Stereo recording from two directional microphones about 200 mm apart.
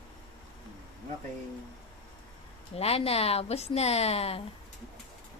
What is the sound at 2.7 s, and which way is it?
A woman's voice, 30° left (ahead or behind).